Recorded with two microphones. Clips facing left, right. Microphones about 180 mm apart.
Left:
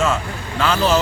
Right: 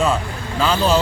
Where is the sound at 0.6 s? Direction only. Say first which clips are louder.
Even; 30° right (ahead or behind).